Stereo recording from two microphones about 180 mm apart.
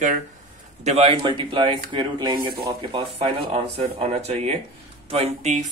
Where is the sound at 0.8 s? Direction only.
35° right (ahead or behind).